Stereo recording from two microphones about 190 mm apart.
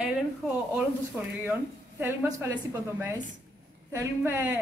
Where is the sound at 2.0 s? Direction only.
10° right (ahead or behind).